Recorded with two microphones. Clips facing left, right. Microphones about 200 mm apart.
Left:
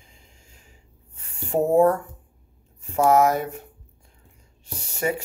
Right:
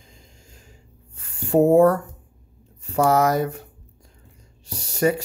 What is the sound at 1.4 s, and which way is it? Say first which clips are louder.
Speech: right 4 dB; 75° right (ahead or behind).